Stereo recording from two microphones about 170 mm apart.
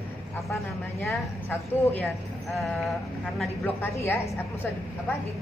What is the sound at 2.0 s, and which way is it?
Speech, centre (ahead or behind).